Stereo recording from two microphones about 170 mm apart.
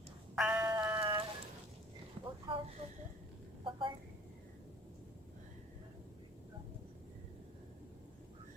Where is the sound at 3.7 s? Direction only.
30° right (ahead or behind).